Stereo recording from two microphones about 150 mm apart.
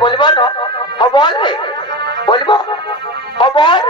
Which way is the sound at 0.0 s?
30° left (ahead or behind).